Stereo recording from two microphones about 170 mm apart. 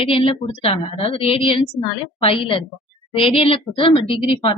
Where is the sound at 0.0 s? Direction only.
30° left (ahead or behind).